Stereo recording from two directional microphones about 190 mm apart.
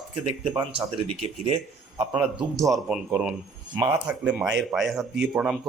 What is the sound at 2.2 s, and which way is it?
A man's voice, centre (ahead or behind).